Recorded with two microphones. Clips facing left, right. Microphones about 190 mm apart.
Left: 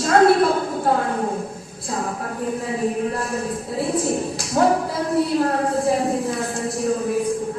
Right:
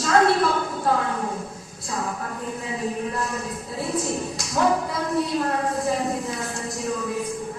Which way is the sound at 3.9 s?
30° left (ahead or behind).